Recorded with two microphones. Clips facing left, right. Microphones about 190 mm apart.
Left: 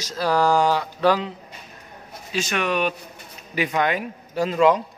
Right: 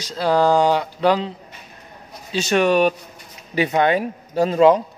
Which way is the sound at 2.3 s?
35° right (ahead or behind).